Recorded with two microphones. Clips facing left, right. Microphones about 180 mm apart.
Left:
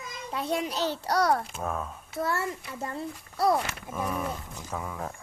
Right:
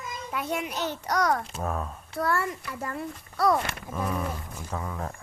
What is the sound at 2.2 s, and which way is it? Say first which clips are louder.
Child singing: right 2 dB; 20° left (ahead or behind).